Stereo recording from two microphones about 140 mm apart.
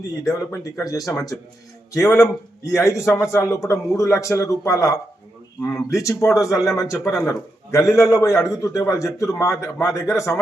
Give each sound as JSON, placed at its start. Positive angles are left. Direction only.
{"t": 0.5, "sound": "speech", "side_deg": 20}